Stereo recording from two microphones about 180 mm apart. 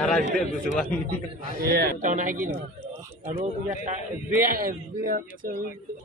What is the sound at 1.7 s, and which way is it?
Speech, 65° right (ahead or behind).